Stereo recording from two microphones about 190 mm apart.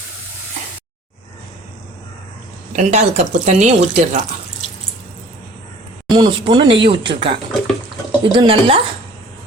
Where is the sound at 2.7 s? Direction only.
40° right (ahead or behind).